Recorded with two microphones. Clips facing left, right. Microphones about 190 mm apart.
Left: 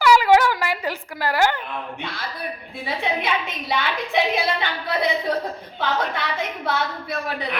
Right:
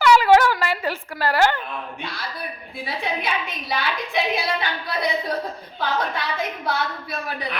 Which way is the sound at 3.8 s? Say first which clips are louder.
Left 2 dB; 25° left (ahead or behind).